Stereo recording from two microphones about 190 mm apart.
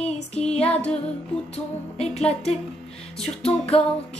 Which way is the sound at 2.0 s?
35° left (ahead or behind).